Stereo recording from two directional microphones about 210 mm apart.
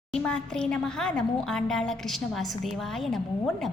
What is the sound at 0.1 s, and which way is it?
A woman's voice, 5° left (ahead or behind).